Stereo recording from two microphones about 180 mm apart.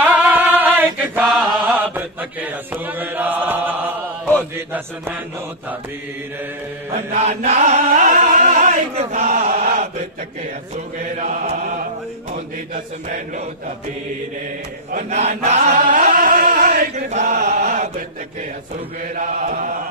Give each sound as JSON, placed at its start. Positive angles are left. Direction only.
{"t": 0.0, "sound": "chant", "side_deg": -10}
{"t": 4.6, "sound": "music", "side_deg": -10}
{"t": 6.9, "sound": "music", "side_deg": -40}
{"t": 11.1, "sound": "chant", "side_deg": -40}
{"t": 14.9, "sound": "chant", "side_deg": -40}
{"t": 19.1, "sound": "chant", "side_deg": -50}